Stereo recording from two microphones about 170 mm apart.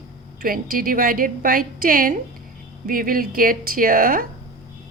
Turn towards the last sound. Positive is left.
turn(degrees=-55)  # may be behind; listen again after turning